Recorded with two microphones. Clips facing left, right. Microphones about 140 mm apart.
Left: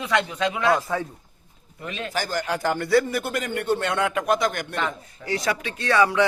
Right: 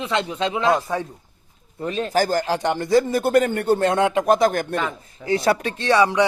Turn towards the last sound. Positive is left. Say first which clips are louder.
# right 3 dB
turn(degrees=-20)  # may be behind; listen again after turning